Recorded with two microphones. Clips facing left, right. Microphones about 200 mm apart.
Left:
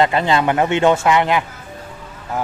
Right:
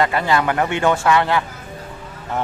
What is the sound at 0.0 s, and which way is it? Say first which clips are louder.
Speech: left 2 dB; 20° left (ahead or behind).